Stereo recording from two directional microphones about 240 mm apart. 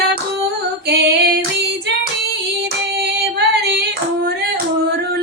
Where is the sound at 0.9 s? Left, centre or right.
Right.